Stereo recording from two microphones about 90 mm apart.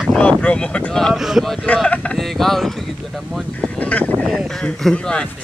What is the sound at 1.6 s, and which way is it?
Boat, 15° left (ahead or behind).